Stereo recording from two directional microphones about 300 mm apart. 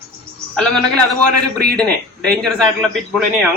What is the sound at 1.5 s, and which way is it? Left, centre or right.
Speech, right.